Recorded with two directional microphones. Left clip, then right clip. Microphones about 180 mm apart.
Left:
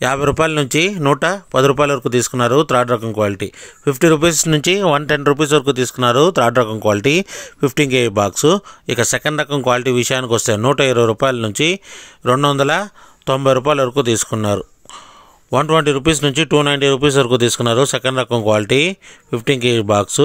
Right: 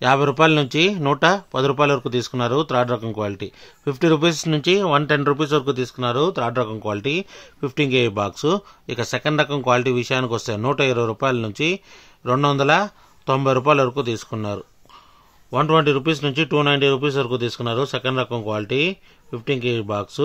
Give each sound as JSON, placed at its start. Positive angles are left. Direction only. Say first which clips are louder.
{"t": 0.0, "sound": "speech", "louder": "left 1 dB", "side_deg": 25}